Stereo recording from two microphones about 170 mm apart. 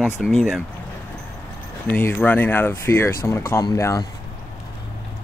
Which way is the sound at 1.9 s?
10° left (ahead or behind).